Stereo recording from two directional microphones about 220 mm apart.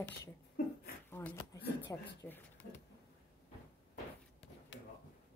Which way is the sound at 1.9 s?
10° left (ahead or behind).